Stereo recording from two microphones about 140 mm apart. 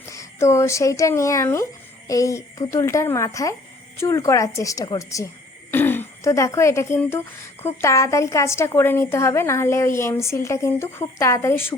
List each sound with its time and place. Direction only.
0.0 s a woman's voice: 20° left (ahead or behind)